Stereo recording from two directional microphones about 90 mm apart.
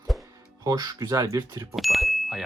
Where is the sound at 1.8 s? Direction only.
Centre (ahead or behind).